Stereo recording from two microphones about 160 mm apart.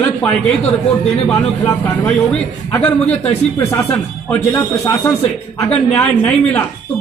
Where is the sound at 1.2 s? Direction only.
15° left (ahead or behind).